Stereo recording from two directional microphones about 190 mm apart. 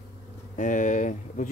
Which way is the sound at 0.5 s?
40° left (ahead or behind).